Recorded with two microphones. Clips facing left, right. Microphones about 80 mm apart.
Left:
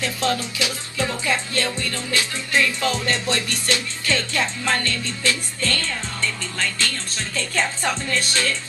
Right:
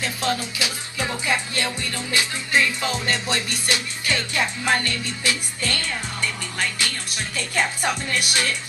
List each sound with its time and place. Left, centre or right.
0.0 s speech: right
0.6 s music: right